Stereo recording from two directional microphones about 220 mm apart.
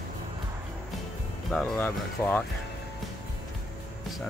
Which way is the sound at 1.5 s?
Centre (ahead or behind).